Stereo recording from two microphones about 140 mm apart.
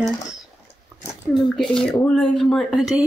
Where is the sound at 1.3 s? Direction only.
5° left (ahead or behind).